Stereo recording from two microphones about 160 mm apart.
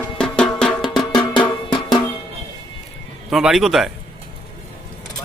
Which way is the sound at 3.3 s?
Centre (ahead or behind).